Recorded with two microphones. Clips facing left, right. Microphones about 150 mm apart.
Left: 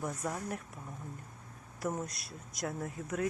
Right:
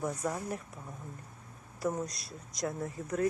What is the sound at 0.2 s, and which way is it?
Speech, centre (ahead or behind).